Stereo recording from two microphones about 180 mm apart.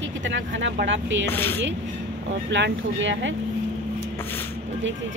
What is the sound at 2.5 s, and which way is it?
Speech, 85° right.